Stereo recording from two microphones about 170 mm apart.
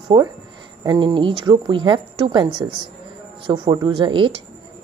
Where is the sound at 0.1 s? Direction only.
25° right (ahead or behind).